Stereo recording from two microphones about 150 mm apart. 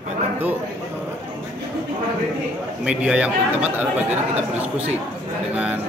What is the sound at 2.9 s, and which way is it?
A man's voice, 10° right (ahead or behind).